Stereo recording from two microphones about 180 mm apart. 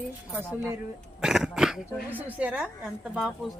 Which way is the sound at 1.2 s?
5° right (ahead or behind).